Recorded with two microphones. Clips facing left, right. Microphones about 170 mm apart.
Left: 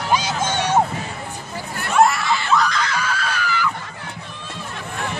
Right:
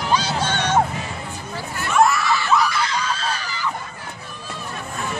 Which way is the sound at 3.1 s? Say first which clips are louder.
Left 3 dB; 30° right (ahead or behind).